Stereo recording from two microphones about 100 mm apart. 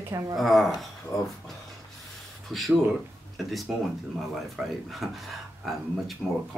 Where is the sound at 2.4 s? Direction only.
Centre (ahead or behind).